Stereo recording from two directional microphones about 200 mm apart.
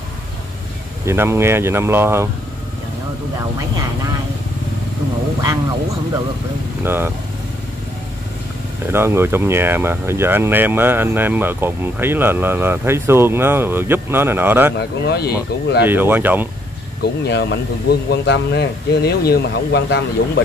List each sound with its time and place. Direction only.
1.0 s speech: 10° right (ahead or behind)
6.8 s speech: 10° right (ahead or behind)
8.9 s speech: 10° right (ahead or behind)
14.8 s speech: 55° left (ahead or behind)
15.8 s speech: 10° right (ahead or behind)
17.3 s speech: 60° left (ahead or behind)